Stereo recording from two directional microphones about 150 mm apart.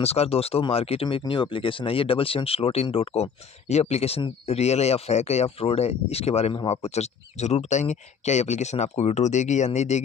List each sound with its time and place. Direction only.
0.0 s speech: 45° left (ahead or behind)